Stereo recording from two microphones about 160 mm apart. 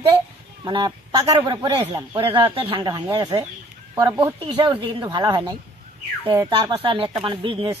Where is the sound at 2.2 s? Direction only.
35° right (ahead or behind).